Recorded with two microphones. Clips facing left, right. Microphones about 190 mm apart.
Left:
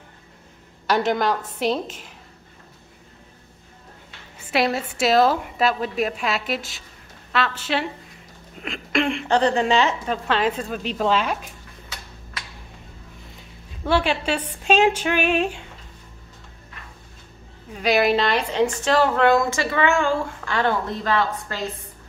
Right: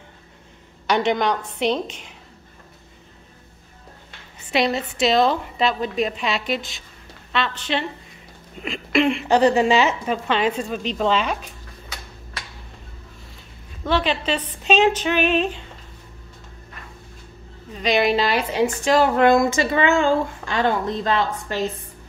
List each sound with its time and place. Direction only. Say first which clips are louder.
0.8 s a woman's voice: right 1 dB; 5° left (ahead or behind)
4.5 s a woman's voice: right 1 dB; 5° left (ahead or behind)
13.8 s speech: even; 10° left (ahead or behind)
17.7 s a woman's voice: even; 5° left (ahead or behind); by 21.6 s 20° right (ahead or behind)